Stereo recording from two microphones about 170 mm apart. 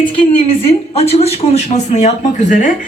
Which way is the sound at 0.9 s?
35° left (ahead or behind).